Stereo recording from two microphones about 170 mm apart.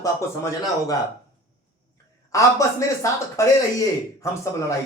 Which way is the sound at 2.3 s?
20° left (ahead or behind).